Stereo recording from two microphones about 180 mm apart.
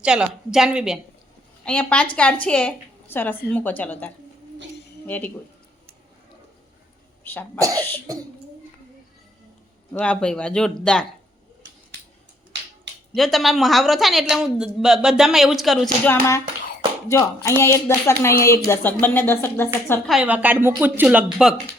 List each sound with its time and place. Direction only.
0.0 s speech: 5° right (ahead or behind)
1.6 s speech: 5° left (ahead or behind)
7.3 s speech: 10° left (ahead or behind)
7.6 s speech: 20° right (ahead or behind)
9.9 s speech: 5° left (ahead or behind)
13.1 s speech: centre (ahead or behind)
16.0 s speech: 15° left (ahead or behind)
20.1 s a woman's voice: 5° right (ahead or behind)